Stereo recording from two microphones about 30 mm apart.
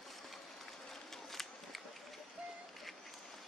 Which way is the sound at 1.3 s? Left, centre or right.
Centre.